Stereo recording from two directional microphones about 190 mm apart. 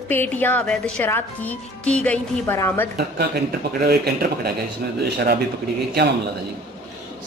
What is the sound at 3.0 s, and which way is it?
Speech, 55° right (ahead or behind).